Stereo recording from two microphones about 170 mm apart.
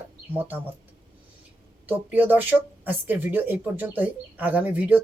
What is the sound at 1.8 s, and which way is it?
Speech, 10° right (ahead or behind).